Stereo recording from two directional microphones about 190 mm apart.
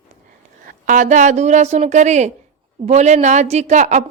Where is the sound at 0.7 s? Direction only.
45° right (ahead or behind).